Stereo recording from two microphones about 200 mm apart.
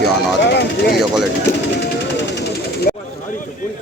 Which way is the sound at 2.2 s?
60° left (ahead or behind).